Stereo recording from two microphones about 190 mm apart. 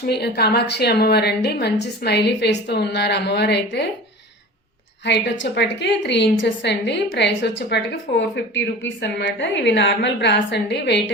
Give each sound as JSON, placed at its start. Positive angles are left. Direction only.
{"t": 0.1, "sound": "a woman's voice", "side_deg": 60}
{"t": 5.0, "sound": "a woman's voice", "side_deg": 65}